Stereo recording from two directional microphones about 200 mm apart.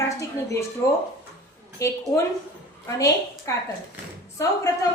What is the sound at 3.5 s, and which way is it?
Speech, 15° left (ahead or behind).